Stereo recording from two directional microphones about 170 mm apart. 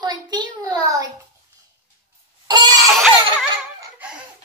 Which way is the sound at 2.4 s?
25° right (ahead or behind).